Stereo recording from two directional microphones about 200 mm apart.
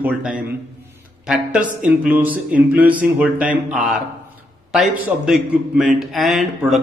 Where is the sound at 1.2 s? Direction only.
5° right (ahead or behind).